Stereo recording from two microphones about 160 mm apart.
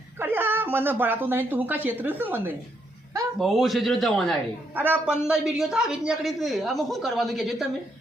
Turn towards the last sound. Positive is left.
turn(degrees=0)  # may be behind; listen again after turning